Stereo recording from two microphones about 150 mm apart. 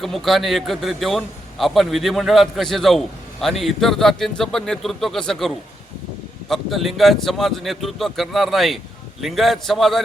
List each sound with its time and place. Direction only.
0.0 s a man's voice: centre (ahead or behind)